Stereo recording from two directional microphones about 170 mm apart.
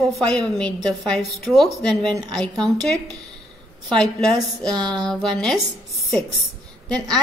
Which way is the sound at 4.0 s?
5° left (ahead or behind).